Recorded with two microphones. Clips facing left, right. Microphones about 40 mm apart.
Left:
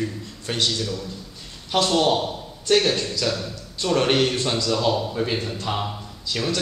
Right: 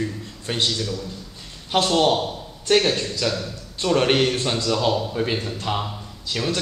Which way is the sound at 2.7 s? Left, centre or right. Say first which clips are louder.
Right 1 dB; right.